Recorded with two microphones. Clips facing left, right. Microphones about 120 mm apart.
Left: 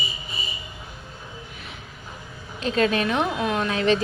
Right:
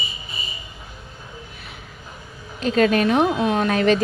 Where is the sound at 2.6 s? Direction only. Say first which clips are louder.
Right 4 dB; 40° right (ahead or behind).